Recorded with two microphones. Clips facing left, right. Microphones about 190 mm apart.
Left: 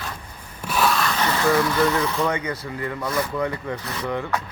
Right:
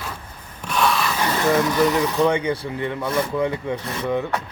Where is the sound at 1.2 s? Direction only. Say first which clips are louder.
Right 1 dB; 20° right (ahead or behind).